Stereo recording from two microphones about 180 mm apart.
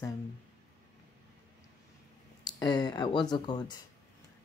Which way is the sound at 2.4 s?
25° left (ahead or behind).